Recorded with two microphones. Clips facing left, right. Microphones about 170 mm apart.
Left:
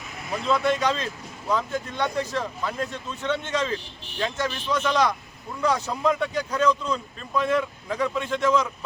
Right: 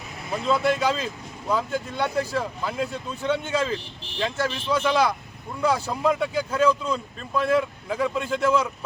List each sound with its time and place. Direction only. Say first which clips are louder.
0.4 s speech: right 1 dB; 5° right (ahead or behind)